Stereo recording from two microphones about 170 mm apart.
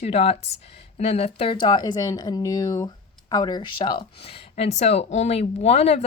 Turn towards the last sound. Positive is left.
turn(degrees=35)  # may be behind; listen again after turning